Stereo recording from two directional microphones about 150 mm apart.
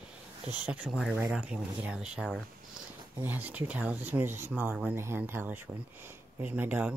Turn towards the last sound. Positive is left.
turn(degrees=-10)  # may be behind; listen again after turning